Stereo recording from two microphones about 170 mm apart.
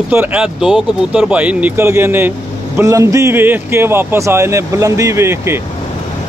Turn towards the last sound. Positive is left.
turn(degrees=-15)  # may be behind; listen again after turning